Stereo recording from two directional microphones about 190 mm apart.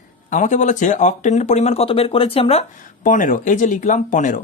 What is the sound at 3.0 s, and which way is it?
Speech, 45° left (ahead or behind).